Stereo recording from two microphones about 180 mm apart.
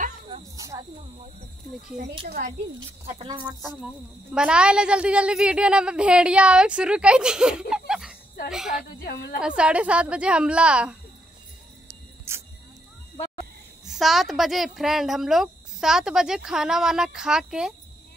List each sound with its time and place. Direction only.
0.6 s snake: 20° right (ahead or behind)
2.2 s speech: 55° right (ahead or behind)
3.3 s speech: 20° right (ahead or behind)
4.3 s a woman's voice: 5° right (ahead or behind)
7.7 s laughter: 5° right (ahead or behind)
8.5 s a woman's voice: 5° right (ahead or behind)
9.0 s a woman's voice: 60° left (ahead or behind)
9.4 s a woman's voice: 5° right (ahead or behind)
12.3 s music: 15° right (ahead or behind)
13.8 s a woman's voice: centre (ahead or behind)